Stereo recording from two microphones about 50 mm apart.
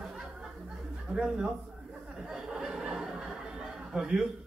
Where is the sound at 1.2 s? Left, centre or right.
Right.